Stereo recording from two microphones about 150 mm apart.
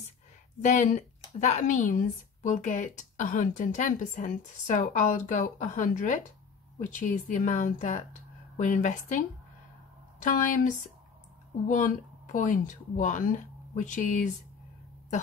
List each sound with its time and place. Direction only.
0.6 s speech: 55° left (ahead or behind)
10.2 s speech: 60° left (ahead or behind)